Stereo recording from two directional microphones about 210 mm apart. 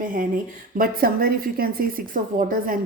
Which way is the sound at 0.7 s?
45° right (ahead or behind).